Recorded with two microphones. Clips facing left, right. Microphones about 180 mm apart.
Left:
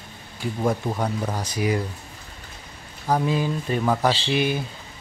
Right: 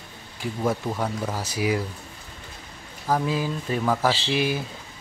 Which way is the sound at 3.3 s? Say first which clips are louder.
Left 2 dB; centre (ahead or behind).